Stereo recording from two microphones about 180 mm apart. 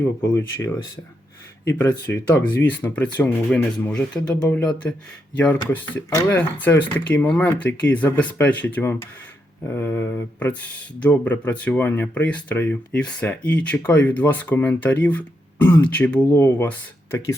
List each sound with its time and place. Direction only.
0.2 s speech: 15° left (ahead or behind)